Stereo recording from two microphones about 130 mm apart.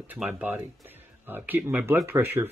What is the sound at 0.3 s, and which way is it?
Speech, 15° right (ahead or behind).